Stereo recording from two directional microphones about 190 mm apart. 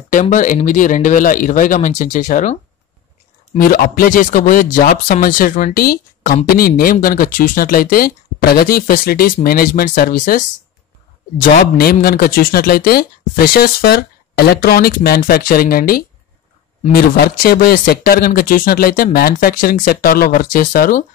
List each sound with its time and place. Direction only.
0.1 s speech: 45° left (ahead or behind)